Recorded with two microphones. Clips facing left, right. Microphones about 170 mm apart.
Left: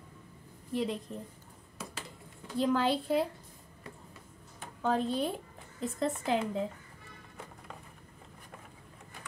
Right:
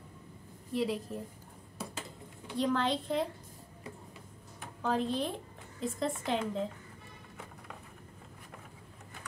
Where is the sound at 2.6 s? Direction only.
5° left (ahead or behind).